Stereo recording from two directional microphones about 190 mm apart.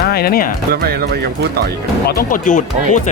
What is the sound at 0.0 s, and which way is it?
Speech, 55° left (ahead or behind).